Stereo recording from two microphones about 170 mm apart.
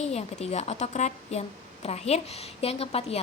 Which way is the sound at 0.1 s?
40° left (ahead or behind).